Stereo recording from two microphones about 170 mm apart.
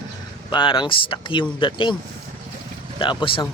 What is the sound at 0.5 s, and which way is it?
Speech, 30° left (ahead or behind).